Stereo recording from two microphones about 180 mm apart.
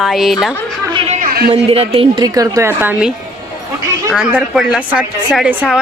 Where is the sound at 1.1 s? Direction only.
55° right (ahead or behind).